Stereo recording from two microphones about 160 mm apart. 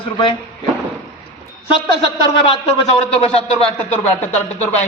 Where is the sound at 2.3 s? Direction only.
30° left (ahead or behind).